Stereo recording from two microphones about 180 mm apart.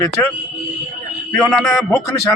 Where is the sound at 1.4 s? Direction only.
Centre (ahead or behind).